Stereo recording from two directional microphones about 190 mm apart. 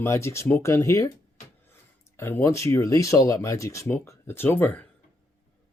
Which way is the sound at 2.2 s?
15° left (ahead or behind).